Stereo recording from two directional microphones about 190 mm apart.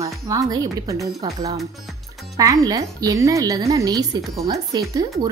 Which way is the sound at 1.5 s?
Centre (ahead or behind).